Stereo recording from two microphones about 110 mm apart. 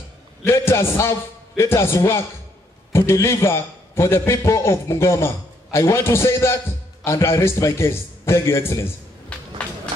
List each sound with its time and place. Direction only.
0.4 s a man's voice: 25° left (ahead or behind)